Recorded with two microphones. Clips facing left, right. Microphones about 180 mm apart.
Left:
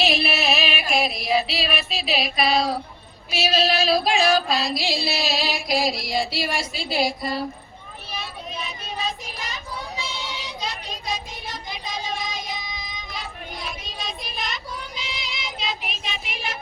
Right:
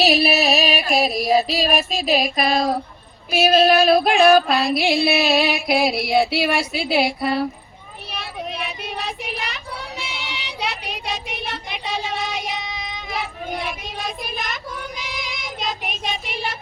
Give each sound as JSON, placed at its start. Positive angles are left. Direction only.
{"t": 0.3, "sound": "music", "side_deg": -40}
{"t": 8.1, "sound": "a sound", "side_deg": -65}
{"t": 15.2, "sound": "child singing", "side_deg": -45}